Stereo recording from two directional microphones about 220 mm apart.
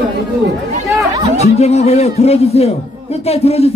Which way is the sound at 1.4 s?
30° left (ahead or behind).